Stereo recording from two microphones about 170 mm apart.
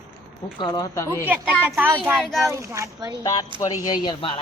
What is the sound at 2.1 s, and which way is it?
Speech, centre (ahead or behind).